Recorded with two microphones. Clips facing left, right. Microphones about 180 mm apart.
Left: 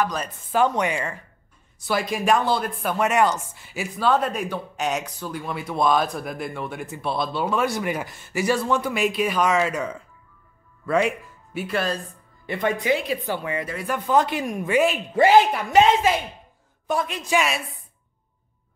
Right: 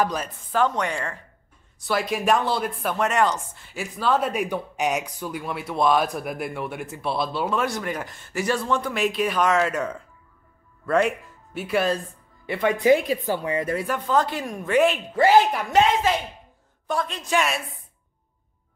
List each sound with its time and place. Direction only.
0.5 s a woman's voice: 10° left (ahead or behind); by 12.7 s 10° right (ahead or behind)
12.8 s a woman's voice: 40° right (ahead or behind)
13.8 s speech: 5° left (ahead or behind)
14.1 s a woman's voice: 15° left (ahead or behind)